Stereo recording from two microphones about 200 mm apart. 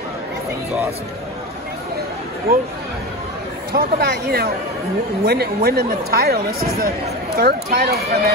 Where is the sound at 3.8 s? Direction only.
50° right (ahead or behind).